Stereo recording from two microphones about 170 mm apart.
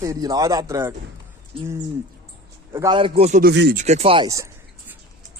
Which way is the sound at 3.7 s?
40° right (ahead or behind).